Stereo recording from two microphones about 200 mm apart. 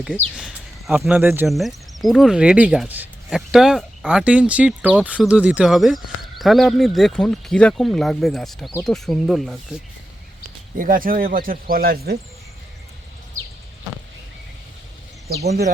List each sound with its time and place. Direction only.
0.3 s speech: 5° right (ahead or behind)
10.8 s speech: 45° right (ahead or behind)